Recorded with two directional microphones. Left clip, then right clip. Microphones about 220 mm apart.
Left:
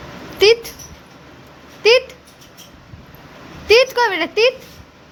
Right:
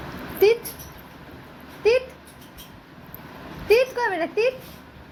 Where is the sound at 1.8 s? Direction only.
25° left (ahead or behind).